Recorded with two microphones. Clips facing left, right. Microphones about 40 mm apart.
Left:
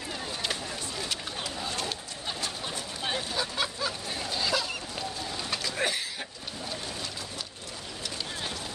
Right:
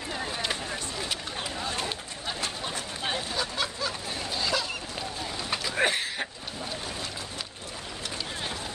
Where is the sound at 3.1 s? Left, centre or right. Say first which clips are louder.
Left 1 dB; centre.